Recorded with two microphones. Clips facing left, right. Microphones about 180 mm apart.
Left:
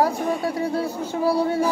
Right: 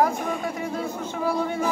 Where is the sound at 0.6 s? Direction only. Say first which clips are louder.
Left 4 dB; 35° left (ahead or behind).